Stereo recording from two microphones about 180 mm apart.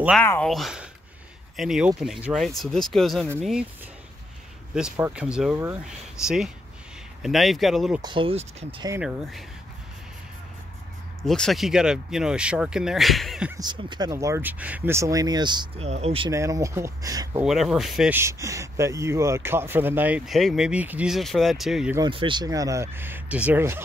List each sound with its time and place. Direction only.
0.2 s speech: 5° left (ahead or behind)
4.9 s speech: 10° right (ahead or behind)
8.0 s speech: 30° right (ahead or behind)
11.2 s speech: centre (ahead or behind)
13.5 s speech: 25° right (ahead or behind)
16.3 s speech: 20° right (ahead or behind)
17.4 s speech: centre (ahead or behind)
18.1 s speech: 15° right (ahead or behind)
21.9 s speech: 25° right (ahead or behind)